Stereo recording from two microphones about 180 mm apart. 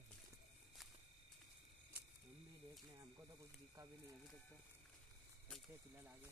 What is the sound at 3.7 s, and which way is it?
Speech, 15° right (ahead or behind).